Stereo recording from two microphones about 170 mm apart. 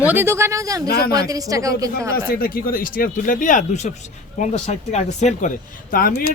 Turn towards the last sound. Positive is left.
turn(degrees=60)  # may be behind; listen again after turning